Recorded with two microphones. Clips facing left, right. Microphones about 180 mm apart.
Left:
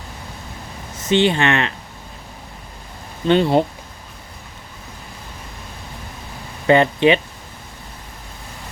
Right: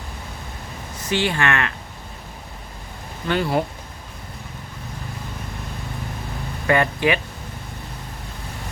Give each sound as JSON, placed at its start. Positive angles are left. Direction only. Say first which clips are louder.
{"t": 1.0, "sound": "speech", "louder": "left 6 dB", "side_deg": 20}
{"t": 3.2, "sound": "speech", "louder": "left 7 dB", "side_deg": 25}
{"t": 6.7, "sound": "speech", "louder": "left 6 dB", "side_deg": 25}